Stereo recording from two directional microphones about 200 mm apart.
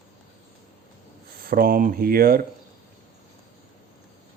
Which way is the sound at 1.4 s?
45° right (ahead or behind).